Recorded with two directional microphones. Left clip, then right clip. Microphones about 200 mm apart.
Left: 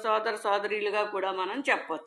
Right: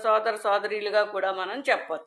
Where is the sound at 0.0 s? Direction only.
20° right (ahead or behind).